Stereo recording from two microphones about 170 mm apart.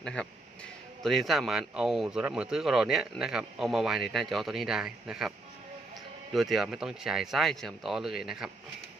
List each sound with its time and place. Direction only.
0.0 s speech: 5° left (ahead or behind)
6.3 s speech: centre (ahead or behind)